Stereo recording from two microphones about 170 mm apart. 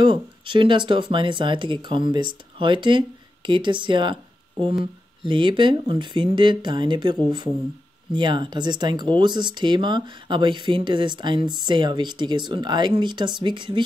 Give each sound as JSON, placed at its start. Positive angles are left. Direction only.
{"t": 0.0, "sound": "speech", "side_deg": -30}